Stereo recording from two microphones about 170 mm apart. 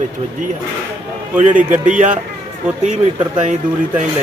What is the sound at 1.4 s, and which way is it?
Speech, 45° right (ahead or behind).